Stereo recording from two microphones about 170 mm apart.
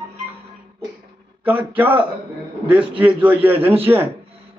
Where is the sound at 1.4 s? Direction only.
10° right (ahead or behind).